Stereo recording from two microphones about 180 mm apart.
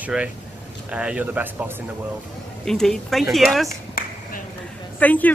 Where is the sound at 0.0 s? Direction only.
5° right (ahead or behind).